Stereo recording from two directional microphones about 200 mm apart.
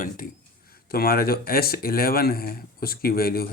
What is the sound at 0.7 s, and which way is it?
Speech, 50° left (ahead or behind).